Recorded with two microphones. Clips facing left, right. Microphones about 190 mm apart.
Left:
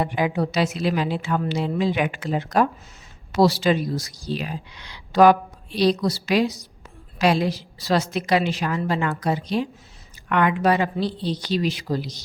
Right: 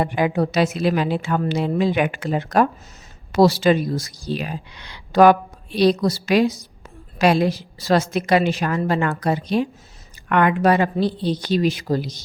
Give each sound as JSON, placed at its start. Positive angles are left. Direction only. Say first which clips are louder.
{"t": 0.0, "sound": "a woman's voice", "louder": "right 3 dB", "side_deg": -55}